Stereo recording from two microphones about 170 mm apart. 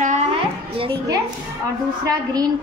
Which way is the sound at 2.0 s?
20° right (ahead or behind).